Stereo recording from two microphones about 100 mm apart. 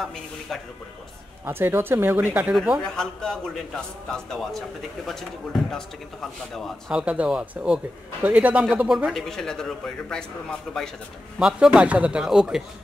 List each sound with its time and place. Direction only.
0.0 s a man's voice: centre (ahead or behind)
1.4 s speech: 20° right (ahead or behind)
2.5 s a man's voice: 5° right (ahead or behind)
2.9 s a man's voice: 5° left (ahead or behind)
6.5 s a man's voice: 5° left (ahead or behind)
7.0 s a man's voice: 10° right (ahead or behind)
8.2 s a man's voice: 15° right (ahead or behind); by 10.2 s 5° left (ahead or behind)
11.3 s a man's voice: 5° right (ahead or behind)